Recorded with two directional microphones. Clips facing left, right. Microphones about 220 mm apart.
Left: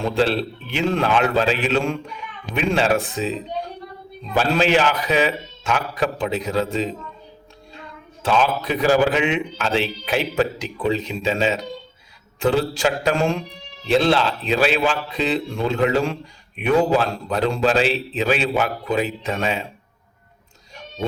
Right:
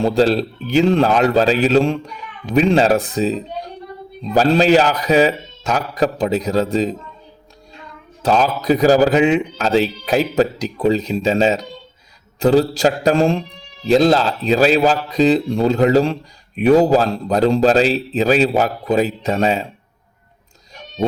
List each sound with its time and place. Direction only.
0.0 s a man's voice: 40° right (ahead or behind)
8.2 s a man's voice: 40° right (ahead or behind)